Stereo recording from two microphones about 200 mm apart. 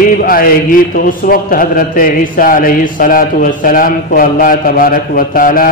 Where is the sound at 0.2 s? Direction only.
45° left (ahead or behind).